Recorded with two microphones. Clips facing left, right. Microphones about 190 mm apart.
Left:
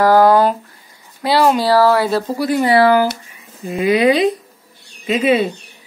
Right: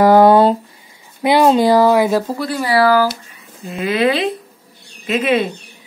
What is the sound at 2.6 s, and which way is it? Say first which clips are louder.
A woman's voice: left 1 dB; 25° left (ahead or behind).